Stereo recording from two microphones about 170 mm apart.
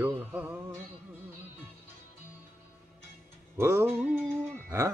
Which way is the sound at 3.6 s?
15° right (ahead or behind).